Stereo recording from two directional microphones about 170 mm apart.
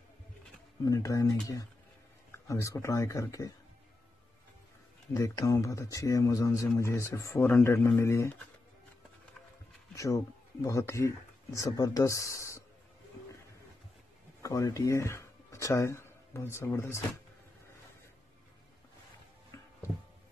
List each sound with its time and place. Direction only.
0.8 s speech: 20° left (ahead or behind)
5.1 s speech: 20° left (ahead or behind)
9.9 s speech: 20° left (ahead or behind)
14.4 s speech: 20° left (ahead or behind)
19.5 s a sound: 15° left (ahead or behind)